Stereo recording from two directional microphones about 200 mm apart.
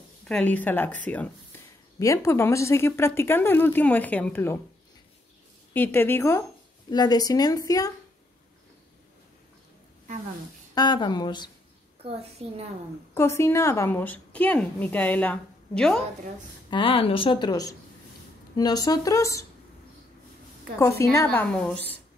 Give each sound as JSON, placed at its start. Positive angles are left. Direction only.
{"t": 0.2, "sound": "a woman's voice", "side_deg": 5}
{"t": 5.7, "sound": "a woman's voice", "side_deg": 10}
{"t": 10.7, "sound": "a woman's voice", "side_deg": 20}
{"t": 12.0, "sound": "a woman's voice", "side_deg": -30}
{"t": 13.1, "sound": "a woman's voice", "side_deg": 15}
{"t": 16.7, "sound": "a woman's voice", "side_deg": 25}
{"t": 20.8, "sound": "a woman's voice", "side_deg": 15}